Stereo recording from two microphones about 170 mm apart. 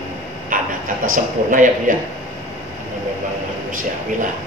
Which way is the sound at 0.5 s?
55° right (ahead or behind).